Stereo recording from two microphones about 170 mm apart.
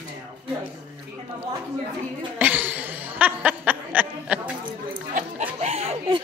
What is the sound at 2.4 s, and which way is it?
Speech, 10° right (ahead or behind).